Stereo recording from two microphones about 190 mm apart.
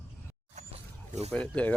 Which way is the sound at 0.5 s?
35° right (ahead or behind).